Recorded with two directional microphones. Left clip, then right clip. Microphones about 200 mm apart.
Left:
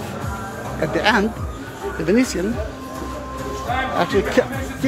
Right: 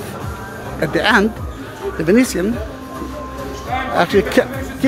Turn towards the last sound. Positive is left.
turn(degrees=-30)  # may be behind; listen again after turning